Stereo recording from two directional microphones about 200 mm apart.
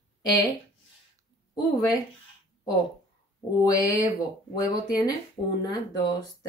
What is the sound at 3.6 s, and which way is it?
Speech, 15° left (ahead or behind).